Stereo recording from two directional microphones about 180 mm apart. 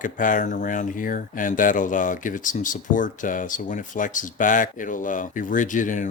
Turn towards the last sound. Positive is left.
turn(degrees=45)  # may be behind; listen again after turning